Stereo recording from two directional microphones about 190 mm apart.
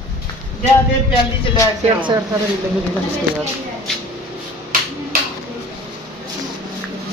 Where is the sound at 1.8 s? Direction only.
25° right (ahead or behind).